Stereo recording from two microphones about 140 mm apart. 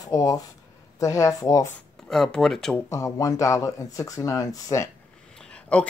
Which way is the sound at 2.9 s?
25° left (ahead or behind).